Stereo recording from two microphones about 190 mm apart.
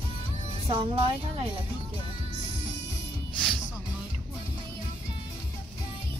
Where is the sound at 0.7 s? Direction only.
25° right (ahead or behind).